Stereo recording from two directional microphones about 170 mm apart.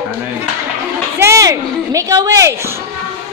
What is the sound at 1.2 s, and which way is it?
Speech, 20° right (ahead or behind).